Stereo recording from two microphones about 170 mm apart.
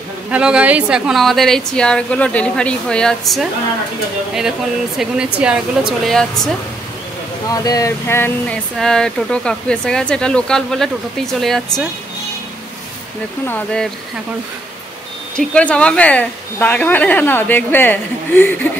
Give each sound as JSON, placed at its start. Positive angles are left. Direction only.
{"t": 0.3, "sound": "speech", "side_deg": -5}
{"t": 7.5, "sound": "speech", "side_deg": 20}
{"t": 8.7, "sound": "speech", "side_deg": 5}
{"t": 13.5, "sound": "speech", "side_deg": 5}
{"t": 15.3, "sound": "speech", "side_deg": 5}